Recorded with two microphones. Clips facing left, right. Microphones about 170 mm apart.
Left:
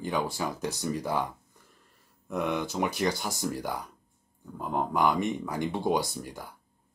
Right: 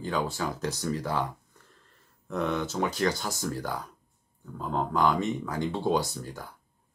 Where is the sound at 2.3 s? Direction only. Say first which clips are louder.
Even; 15° left (ahead or behind).